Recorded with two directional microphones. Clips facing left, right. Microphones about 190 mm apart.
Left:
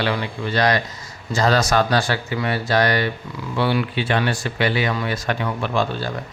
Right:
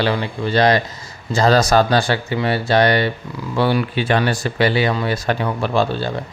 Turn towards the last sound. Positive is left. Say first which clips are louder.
# right 4 dB
turn(degrees=-30)  # may be behind; listen again after turning